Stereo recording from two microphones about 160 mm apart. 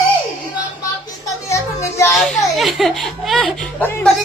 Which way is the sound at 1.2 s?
20° left (ahead or behind).